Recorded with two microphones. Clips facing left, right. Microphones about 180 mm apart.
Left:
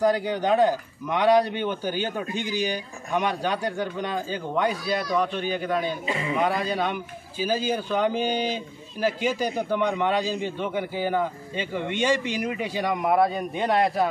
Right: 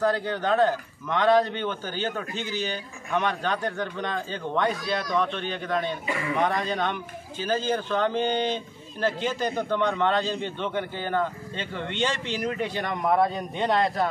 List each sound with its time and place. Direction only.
0.0 s a man's voice: 15° left (ahead or behind)
6.0 s speech: 20° left (ahead or behind)
6.3 s a man's voice: 10° left (ahead or behind)